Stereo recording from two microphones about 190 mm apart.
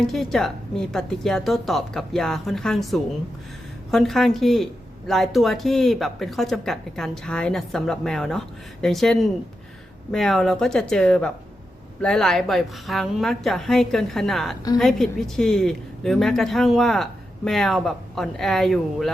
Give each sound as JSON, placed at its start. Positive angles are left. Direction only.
{"t": 0.0, "sound": "speech", "side_deg": 0}